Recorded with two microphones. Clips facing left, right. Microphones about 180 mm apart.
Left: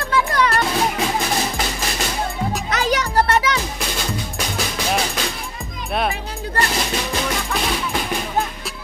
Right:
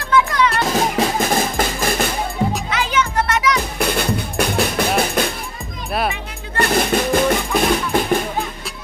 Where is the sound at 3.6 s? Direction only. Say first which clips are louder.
Right 6 dB; 60° right (ahead or behind).